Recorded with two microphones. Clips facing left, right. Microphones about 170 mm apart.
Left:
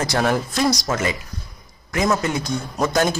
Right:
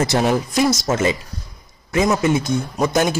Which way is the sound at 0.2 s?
15° right (ahead or behind).